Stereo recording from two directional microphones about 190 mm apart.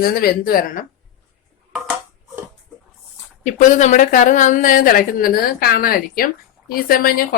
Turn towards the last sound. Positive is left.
turn(degrees=50)  # may be behind; listen again after turning